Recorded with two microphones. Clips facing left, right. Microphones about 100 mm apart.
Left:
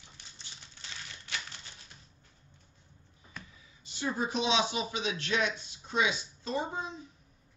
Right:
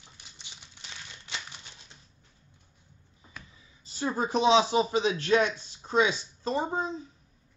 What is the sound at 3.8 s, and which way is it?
A man's voice, 35° right (ahead or behind).